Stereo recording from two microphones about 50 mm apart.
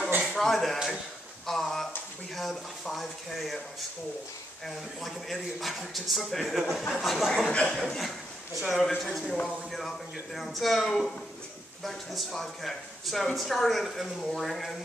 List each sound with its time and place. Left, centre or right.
0.2 s a sound: centre
2.3 s speech: centre
4.6 s speech: centre
7.4 s speech: left
7.8 s a sound: centre
8.5 s speech: centre